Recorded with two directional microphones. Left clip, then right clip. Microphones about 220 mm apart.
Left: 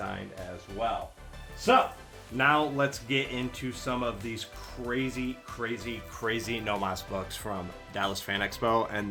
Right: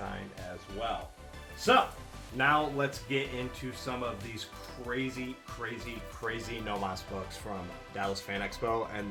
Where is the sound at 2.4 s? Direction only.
35° left (ahead or behind).